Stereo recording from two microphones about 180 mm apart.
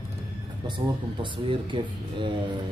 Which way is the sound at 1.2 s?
25° right (ahead or behind).